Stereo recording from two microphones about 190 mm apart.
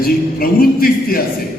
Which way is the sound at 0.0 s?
50° left (ahead or behind).